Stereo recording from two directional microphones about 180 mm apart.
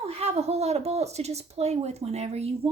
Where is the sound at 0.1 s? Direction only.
35° right (ahead or behind).